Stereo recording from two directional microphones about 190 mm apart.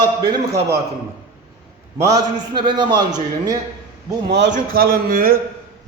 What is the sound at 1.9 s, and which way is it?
A man's voice, 20° right (ahead or behind).